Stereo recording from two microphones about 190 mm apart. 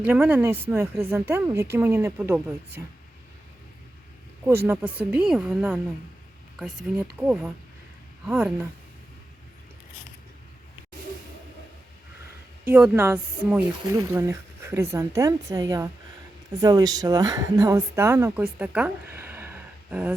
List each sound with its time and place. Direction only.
0.1 s speech: 10° right (ahead or behind)
4.6 s speech: 10° right (ahead or behind)
7.2 s speech: 5° right (ahead or behind)
12.6 s speech: 10° right (ahead or behind)
18.6 s a sound: 5° right (ahead or behind)